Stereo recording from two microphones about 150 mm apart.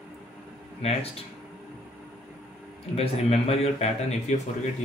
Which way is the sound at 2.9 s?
40° left (ahead or behind).